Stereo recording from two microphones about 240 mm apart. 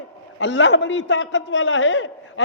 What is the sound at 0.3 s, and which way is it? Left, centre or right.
A man's voice, left.